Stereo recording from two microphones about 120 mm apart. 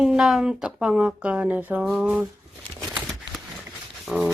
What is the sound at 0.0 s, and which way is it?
Speech, 5° right (ahead or behind).